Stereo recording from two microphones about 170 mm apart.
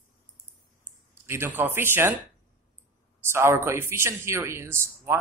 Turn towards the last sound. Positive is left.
turn(degrees=-15)  # may be behind; listen again after turning